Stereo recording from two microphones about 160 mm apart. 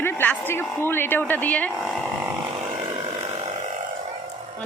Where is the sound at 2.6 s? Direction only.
40° right (ahead or behind).